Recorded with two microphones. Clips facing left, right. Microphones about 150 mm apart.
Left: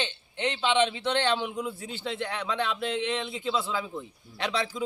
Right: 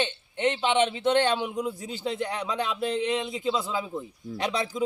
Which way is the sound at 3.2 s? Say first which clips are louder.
Right 3 dB; 40° right (ahead or behind).